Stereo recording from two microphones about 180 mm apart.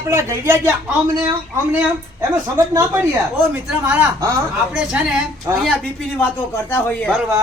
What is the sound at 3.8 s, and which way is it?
A man's voice, 10° right (ahead or behind).